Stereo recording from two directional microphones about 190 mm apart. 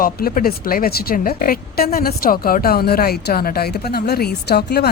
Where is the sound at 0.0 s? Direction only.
50° left (ahead or behind).